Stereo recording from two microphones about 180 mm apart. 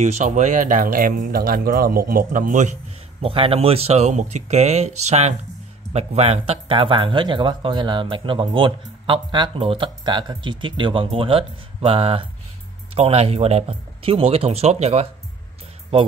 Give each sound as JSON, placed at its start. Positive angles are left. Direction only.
{"t": 0.0, "sound": "speech", "side_deg": -40}
{"t": 3.2, "sound": "speech", "side_deg": -30}